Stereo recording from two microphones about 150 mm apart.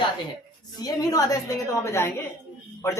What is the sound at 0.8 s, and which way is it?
Speech, 25° left (ahead or behind).